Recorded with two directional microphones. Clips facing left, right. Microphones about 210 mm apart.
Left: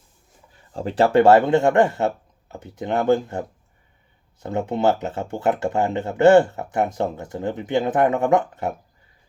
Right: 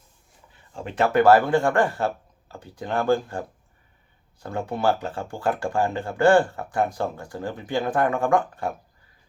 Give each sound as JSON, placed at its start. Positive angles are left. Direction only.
{"t": 0.7, "sound": "speech", "side_deg": 35}
{"t": 4.4, "sound": "speech", "side_deg": 20}